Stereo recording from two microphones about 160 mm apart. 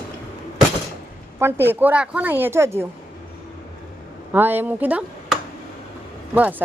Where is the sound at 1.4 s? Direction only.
15° right (ahead or behind).